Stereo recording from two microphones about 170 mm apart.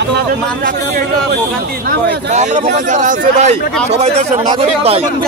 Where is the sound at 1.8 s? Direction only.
45° right (ahead or behind).